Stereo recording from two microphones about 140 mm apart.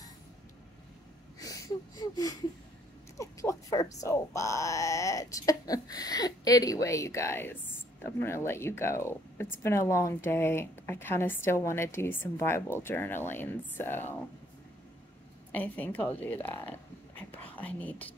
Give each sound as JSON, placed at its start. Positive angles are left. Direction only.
{"t": 1.4, "sound": "a sound", "side_deg": 25}
{"t": 3.2, "sound": "speech", "side_deg": 25}
{"t": 15.5, "sound": "a woman's voice", "side_deg": 10}